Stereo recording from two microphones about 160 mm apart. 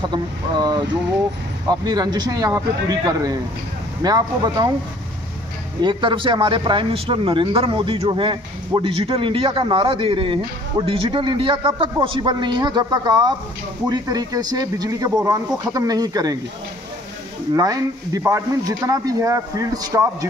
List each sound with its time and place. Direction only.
0.1 s a man's voice: 25° right (ahead or behind)
5.8 s a man's voice: 30° right (ahead or behind)
17.6 s a man's voice: 20° right (ahead or behind)